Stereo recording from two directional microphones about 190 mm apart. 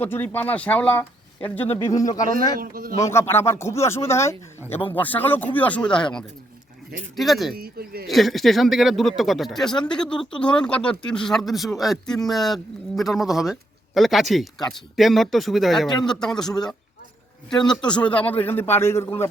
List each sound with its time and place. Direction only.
0.0 s speech: 10° left (ahead or behind)
2.6 s speech: 50° right (ahead or behind)
3.0 s speech: 15° left (ahead or behind)
7.5 s speech: 50° right (ahead or behind)
8.0 s speech: centre (ahead or behind)
17.5 s speech: 25° left (ahead or behind)
17.9 s speech: 5° left (ahead or behind)